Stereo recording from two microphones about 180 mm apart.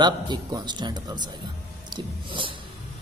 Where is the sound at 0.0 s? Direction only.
25° right (ahead or behind).